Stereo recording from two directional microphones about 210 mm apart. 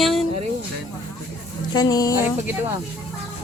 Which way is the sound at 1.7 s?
20° left (ahead or behind).